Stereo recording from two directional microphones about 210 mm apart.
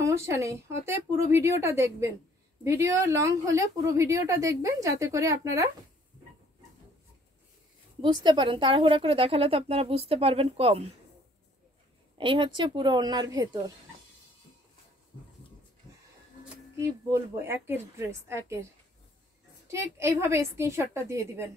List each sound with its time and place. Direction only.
0.0 s a woman's voice: 15° right (ahead or behind)
8.0 s a woman's voice: 20° right (ahead or behind)
12.2 s a woman's voice: 25° right (ahead or behind)
16.7 s a woman's voice: 10° right (ahead or behind)
19.7 s a woman's voice: 15° right (ahead or behind)